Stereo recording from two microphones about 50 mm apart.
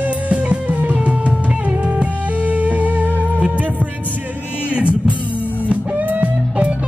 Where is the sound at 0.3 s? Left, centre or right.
Right.